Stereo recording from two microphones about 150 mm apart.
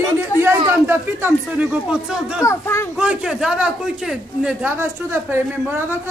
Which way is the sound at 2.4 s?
20° left (ahead or behind).